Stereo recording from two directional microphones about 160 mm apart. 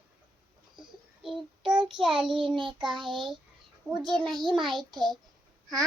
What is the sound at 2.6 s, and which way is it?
A child's voice, centre (ahead or behind).